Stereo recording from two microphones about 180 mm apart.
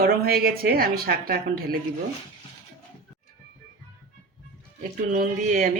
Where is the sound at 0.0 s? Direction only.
60° right (ahead or behind).